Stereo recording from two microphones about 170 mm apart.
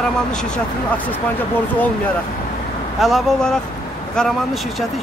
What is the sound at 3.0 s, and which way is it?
Speech, centre (ahead or behind).